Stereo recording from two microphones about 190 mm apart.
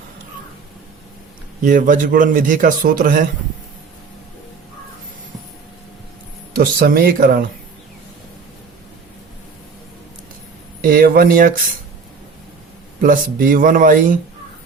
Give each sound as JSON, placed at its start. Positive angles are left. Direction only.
{"t": 1.6, "sound": "a man's voice", "side_deg": -45}
{"t": 6.6, "sound": "a man's voice", "side_deg": -50}
{"t": 10.8, "sound": "a man's voice", "side_deg": -50}
{"t": 13.0, "sound": "a man's voice", "side_deg": -45}